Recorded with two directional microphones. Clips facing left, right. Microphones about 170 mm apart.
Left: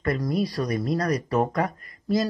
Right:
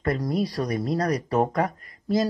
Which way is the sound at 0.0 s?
25° right (ahead or behind).